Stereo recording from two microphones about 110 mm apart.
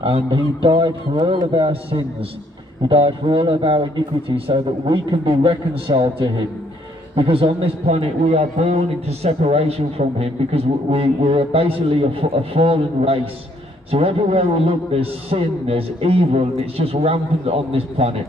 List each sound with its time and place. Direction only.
0.0 s a man's voice: 55° right (ahead or behind)